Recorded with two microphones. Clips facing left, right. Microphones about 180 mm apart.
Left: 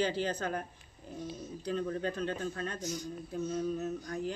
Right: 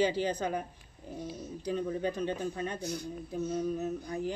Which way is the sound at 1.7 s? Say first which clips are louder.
Right 2 dB; 10° right (ahead or behind).